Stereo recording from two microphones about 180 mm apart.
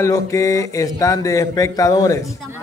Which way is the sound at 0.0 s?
15° left (ahead or behind).